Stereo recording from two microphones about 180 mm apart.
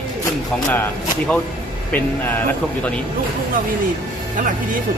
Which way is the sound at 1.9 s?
10° left (ahead or behind).